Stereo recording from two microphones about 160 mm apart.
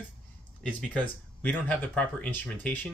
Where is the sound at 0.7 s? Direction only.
10° left (ahead or behind).